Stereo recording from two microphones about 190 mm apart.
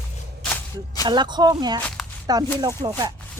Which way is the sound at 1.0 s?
20° right (ahead or behind).